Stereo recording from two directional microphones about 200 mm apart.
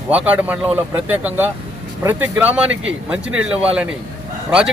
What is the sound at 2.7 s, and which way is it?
Speech, 70° right (ahead or behind).